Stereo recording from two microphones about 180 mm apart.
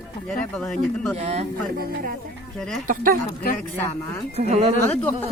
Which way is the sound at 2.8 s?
50° right (ahead or behind).